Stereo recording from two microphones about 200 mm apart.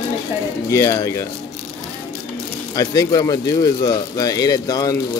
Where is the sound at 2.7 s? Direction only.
15° left (ahead or behind).